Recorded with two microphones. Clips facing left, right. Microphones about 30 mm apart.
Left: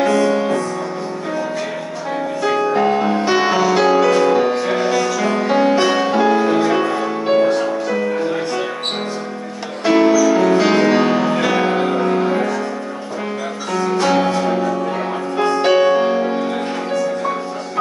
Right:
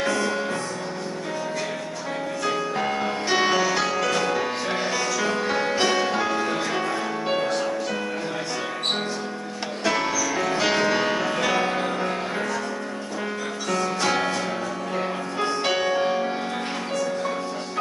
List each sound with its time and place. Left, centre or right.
0.0 s music: centre
2.4 s music: centre
9.8 s music: centre
13.7 s music: centre